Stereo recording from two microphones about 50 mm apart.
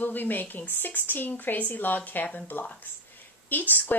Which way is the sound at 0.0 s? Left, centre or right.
Left.